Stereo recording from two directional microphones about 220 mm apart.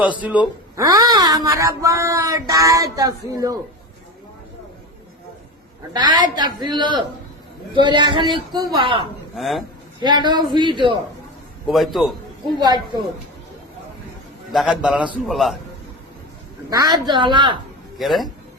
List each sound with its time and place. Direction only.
0.0 s speech: 5° right (ahead or behind)
6.0 s a woman's voice: 20° right (ahead or behind)
9.3 s a man's voice: centre (ahead or behind)
10.0 s a woman's voice: 20° right (ahead or behind)
11.7 s a man's voice: centre (ahead or behind)
12.5 s a woman's voice: 20° right (ahead or behind)
14.5 s a man's voice: centre (ahead or behind)
16.6 s a woman's voice: 15° right (ahead or behind)
17.9 s a man's voice: centre (ahead or behind)